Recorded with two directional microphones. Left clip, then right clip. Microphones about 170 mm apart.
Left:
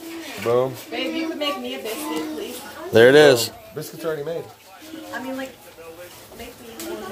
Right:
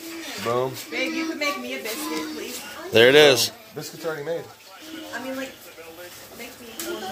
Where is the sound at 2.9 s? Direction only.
25° left (ahead or behind).